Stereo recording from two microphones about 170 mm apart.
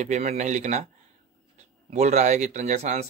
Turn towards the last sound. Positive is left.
turn(degrees=-40)  # may be behind; listen again after turning